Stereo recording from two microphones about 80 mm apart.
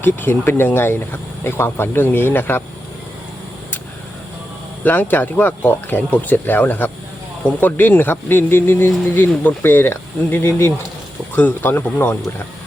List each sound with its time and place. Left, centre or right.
0.0 s speech: left
4.8 s speech: left